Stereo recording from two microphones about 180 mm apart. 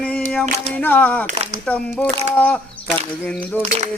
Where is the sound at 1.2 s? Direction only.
40° right (ahead or behind).